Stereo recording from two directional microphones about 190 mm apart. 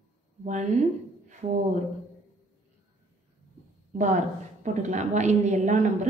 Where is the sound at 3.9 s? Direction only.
40° right (ahead or behind).